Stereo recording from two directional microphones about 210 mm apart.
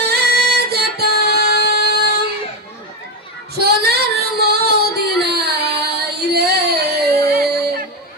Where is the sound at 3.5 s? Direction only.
50° right (ahead or behind).